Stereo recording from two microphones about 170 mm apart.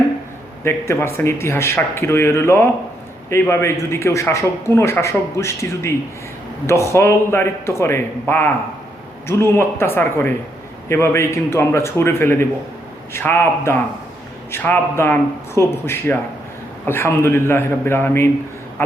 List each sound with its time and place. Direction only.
0.6 s speech: 15° left (ahead or behind)